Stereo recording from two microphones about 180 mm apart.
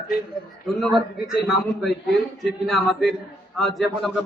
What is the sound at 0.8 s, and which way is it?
A man's voice, centre (ahead or behind).